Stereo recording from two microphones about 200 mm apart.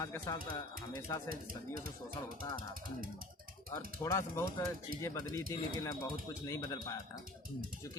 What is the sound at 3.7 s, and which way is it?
Speech, 15° left (ahead or behind).